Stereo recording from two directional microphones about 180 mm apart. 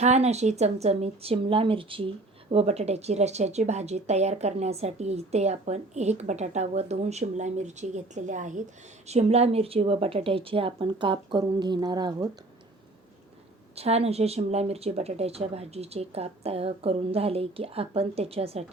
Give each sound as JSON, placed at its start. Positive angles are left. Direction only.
{"t": 0.0, "sound": "speech", "side_deg": -40}
{"t": 13.7, "sound": "speech", "side_deg": -35}